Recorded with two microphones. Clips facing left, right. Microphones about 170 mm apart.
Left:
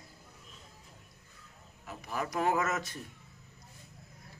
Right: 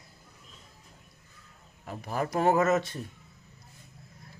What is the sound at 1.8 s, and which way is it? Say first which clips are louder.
A man's voice: right 5 dB; 35° right (ahead or behind).